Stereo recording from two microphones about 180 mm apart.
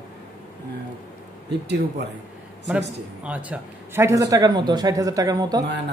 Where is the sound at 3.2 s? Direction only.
5° right (ahead or behind).